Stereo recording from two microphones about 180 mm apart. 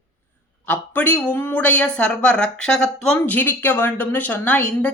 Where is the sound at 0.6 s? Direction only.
10° left (ahead or behind).